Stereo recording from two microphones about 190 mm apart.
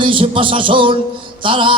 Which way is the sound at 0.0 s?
25° right (ahead or behind).